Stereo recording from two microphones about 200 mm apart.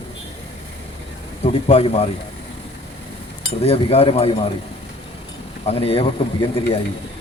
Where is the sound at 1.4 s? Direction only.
30° left (ahead or behind).